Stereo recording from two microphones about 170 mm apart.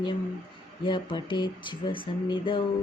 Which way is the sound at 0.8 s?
30° left (ahead or behind).